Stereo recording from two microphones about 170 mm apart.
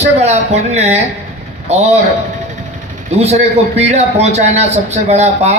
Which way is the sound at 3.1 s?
40° right (ahead or behind).